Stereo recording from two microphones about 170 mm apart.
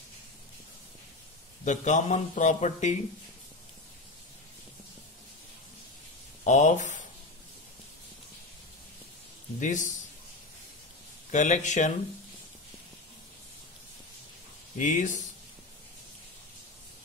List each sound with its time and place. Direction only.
1.6 s a man's voice: 45° left (ahead or behind)
6.4 s a man's voice: 45° left (ahead or behind)
9.6 s a man's voice: 45° left (ahead or behind)
11.3 s a man's voice: 45° left (ahead or behind)
14.8 s a man's voice: 50° left (ahead or behind)